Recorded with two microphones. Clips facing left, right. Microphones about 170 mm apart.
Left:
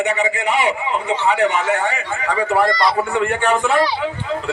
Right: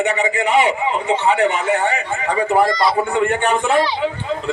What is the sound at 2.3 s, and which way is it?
Speech, 25° right (ahead or behind).